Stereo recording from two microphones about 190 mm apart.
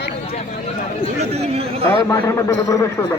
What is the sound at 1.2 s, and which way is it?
Speech, 35° right (ahead or behind).